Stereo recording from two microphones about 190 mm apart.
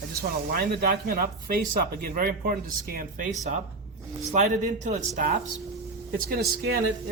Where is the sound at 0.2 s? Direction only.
50° right (ahead or behind).